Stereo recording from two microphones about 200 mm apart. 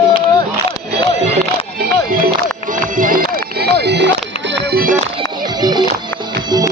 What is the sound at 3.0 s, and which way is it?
Music, 45° right (ahead or behind).